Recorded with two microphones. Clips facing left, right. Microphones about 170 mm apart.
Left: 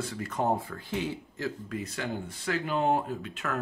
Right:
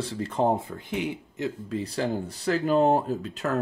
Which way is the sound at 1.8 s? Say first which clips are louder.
Right 8 dB; 35° right (ahead or behind).